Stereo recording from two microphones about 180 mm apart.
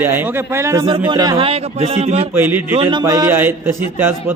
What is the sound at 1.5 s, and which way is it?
Speech, 35° right (ahead or behind).